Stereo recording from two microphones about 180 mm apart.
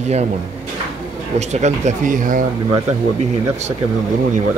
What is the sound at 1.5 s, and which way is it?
Speech, 40° right (ahead or behind).